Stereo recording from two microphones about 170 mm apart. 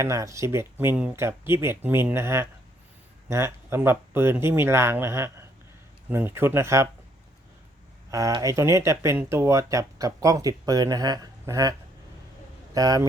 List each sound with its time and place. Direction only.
0.0 s speech: 15° right (ahead or behind)
8.1 s speech: 20° right (ahead or behind)
12.7 s speech: 20° right (ahead or behind)